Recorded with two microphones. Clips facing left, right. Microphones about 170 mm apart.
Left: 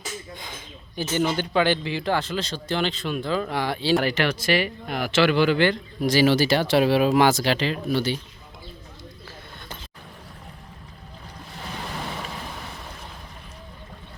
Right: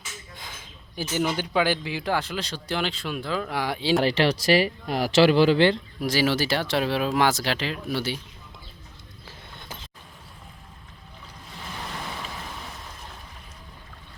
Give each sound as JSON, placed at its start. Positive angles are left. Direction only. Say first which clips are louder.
{"t": 0.3, "sound": "a sound", "louder": "left 4 dB", "side_deg": -5}
{"t": 1.1, "sound": "speech", "louder": "left 2 dB", "side_deg": -10}
{"t": 4.0, "sound": "speech", "louder": "right 2 dB", "side_deg": -30}
{"t": 6.1, "sound": "speech", "louder": "left 5 dB", "side_deg": 0}